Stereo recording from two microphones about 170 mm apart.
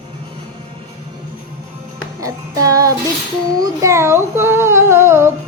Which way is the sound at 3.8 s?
15° right (ahead or behind).